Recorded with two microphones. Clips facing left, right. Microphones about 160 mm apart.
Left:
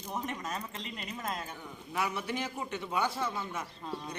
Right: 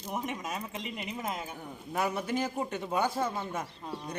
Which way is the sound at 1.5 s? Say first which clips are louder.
Right 2 dB; 45° right (ahead or behind).